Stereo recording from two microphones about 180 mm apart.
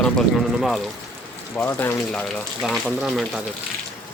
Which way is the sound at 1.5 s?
10° left (ahead or behind).